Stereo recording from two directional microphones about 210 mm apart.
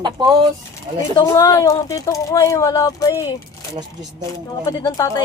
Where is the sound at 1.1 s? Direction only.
15° left (ahead or behind).